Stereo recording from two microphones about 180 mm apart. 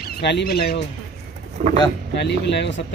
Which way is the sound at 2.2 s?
75° left (ahead or behind).